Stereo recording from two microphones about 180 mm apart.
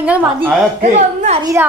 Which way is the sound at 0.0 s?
10° right (ahead or behind).